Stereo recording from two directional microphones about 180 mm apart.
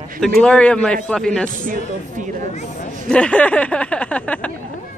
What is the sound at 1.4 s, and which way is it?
Speech, 50° right (ahead or behind).